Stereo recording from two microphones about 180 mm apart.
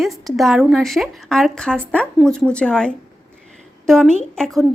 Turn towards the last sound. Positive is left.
turn(degrees=0)  # may be behind; listen again after turning